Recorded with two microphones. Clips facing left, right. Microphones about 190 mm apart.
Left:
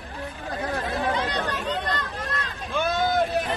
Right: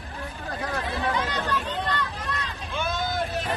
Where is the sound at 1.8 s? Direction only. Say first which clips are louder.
Even; 45° left (ahead or behind).